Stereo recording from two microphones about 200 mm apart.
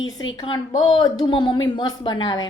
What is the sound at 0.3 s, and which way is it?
A woman's voice, 20° left (ahead or behind).